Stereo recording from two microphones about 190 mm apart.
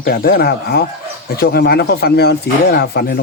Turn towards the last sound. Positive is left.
turn(degrees=55)  # may be behind; listen again after turning